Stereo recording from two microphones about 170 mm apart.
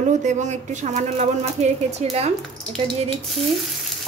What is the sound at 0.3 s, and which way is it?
A woman's voice, 45° right (ahead or behind).